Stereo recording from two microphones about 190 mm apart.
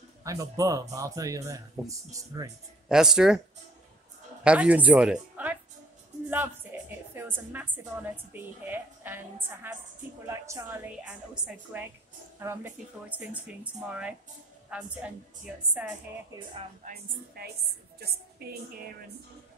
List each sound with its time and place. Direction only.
0.2 s a woman's voice: 15° right (ahead or behind)
2.9 s a woman's voice: 5° right (ahead or behind)
4.4 s speech: 5° right (ahead or behind)
6.7 s a sound: 10° right (ahead or behind)
7.2 s a woman's voice: 10° right (ahead or behind)
17.4 s a woman's voice: 55° right (ahead or behind)